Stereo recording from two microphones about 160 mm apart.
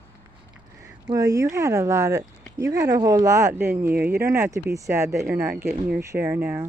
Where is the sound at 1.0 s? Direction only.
20° right (ahead or behind).